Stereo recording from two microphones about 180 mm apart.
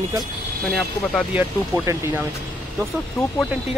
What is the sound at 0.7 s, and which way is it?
Speech, centre (ahead or behind).